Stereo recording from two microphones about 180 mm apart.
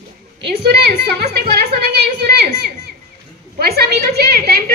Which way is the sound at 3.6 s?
60° right (ahead or behind).